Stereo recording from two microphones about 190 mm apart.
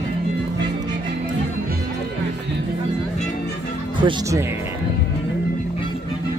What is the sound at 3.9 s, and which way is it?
Speech, 25° right (ahead or behind).